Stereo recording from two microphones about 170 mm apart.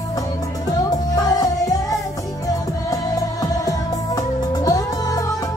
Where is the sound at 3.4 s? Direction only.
20° left (ahead or behind).